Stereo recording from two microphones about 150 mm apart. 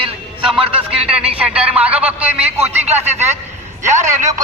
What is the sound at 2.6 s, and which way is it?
A man's voice, 45° right (ahead or behind).